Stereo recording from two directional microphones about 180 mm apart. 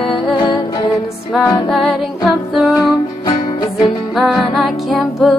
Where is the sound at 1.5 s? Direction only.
Centre (ahead or behind).